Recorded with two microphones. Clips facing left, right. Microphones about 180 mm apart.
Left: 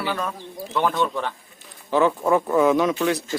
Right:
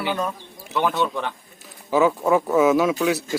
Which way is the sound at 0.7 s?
5° right (ahead or behind).